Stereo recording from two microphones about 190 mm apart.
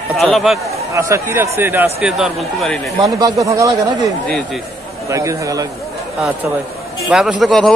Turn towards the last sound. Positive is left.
turn(degrees=0)  # may be behind; listen again after turning